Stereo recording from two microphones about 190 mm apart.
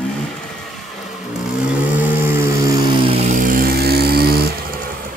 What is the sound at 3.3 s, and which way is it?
Vehicle, 45° right (ahead or behind).